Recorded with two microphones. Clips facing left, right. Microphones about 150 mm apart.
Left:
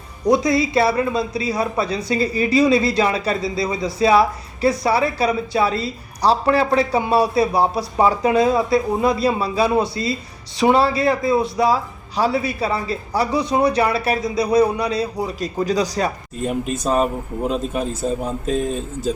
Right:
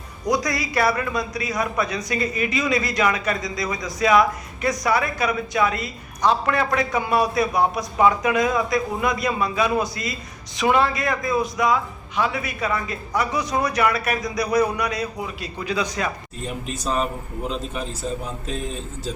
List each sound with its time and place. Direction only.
0.3 s a man's voice: 25° left (ahead or behind)